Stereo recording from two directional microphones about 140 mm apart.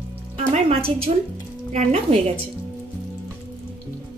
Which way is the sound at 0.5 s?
45° right (ahead or behind).